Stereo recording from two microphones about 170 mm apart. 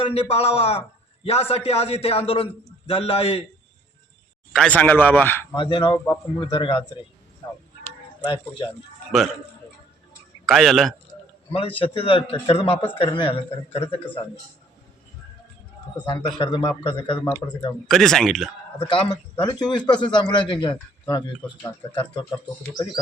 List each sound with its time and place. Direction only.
0.0 s a man's voice: 35° left (ahead or behind)
4.5 s a man's voice: 5° left (ahead or behind)
5.5 s a man's voice: 25° left (ahead or behind)
8.2 s a man's voice: 25° left (ahead or behind)
10.4 s speech: centre (ahead or behind)
11.5 s a man's voice: 30° left (ahead or behind)
16.4 s a man's voice: 30° left (ahead or behind)
17.8 s speech: centre (ahead or behind)
18.8 s a man's voice: 30° left (ahead or behind)
21.9 s a man's voice: 25° left (ahead or behind)